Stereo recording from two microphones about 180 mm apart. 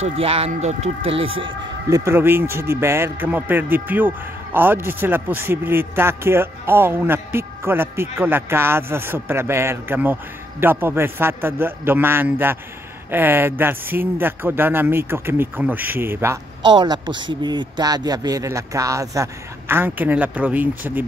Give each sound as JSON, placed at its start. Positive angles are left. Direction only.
{"t": 0.0, "sound": "speech", "side_deg": -35}
{"t": 1.4, "sound": "a man's voice", "side_deg": -20}
{"t": 16.6, "sound": "a man's voice", "side_deg": -25}